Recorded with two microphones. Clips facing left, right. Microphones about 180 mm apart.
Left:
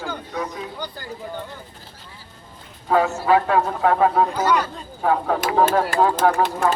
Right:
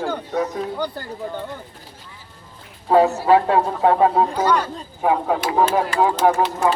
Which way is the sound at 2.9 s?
35° right (ahead or behind).